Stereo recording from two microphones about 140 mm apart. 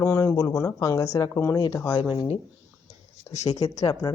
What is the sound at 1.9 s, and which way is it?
Speech, 35° left (ahead or behind).